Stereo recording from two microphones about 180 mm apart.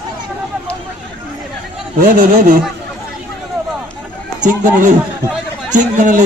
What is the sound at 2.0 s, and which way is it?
Speech, 50° right (ahead or behind).